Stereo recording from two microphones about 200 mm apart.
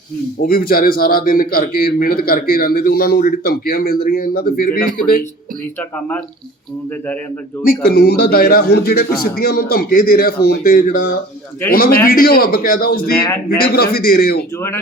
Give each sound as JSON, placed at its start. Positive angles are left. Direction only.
{"t": 0.4, "sound": "a man's voice", "side_deg": 45}
{"t": 7.6, "sound": "a man's voice", "side_deg": 50}